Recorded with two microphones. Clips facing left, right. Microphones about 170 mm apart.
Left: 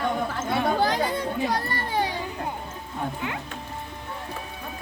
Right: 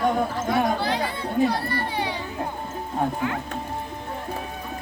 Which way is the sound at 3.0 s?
45° right (ahead or behind).